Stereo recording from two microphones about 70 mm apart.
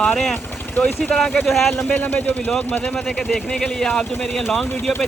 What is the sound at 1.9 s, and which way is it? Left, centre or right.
Speech, left.